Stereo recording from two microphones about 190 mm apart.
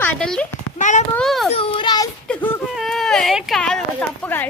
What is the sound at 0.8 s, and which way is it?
Speech, 40° left (ahead or behind).